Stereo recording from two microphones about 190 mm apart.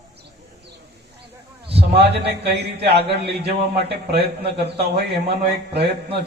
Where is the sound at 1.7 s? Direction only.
30° right (ahead or behind).